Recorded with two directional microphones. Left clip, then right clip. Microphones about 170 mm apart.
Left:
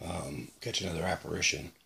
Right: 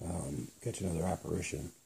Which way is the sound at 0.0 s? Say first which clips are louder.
Left 3 dB; 5° left (ahead or behind).